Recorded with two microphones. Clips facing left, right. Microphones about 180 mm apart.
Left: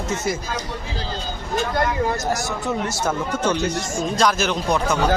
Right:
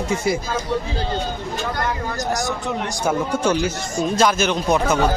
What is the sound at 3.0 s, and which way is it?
A man's voice, 10° right (ahead or behind).